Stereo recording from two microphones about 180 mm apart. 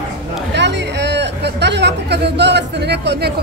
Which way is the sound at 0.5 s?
75° right (ahead or behind).